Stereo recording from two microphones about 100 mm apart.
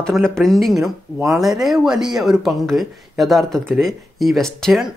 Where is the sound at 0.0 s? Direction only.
5° left (ahead or behind).